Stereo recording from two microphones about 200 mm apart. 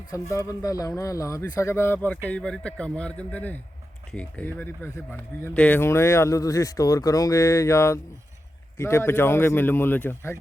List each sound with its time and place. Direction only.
0.1 s a man's voice: 15° left (ahead or behind)